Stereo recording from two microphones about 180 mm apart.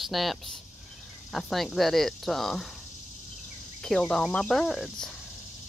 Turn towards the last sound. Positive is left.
turn(degrees=0)  # may be behind; listen again after turning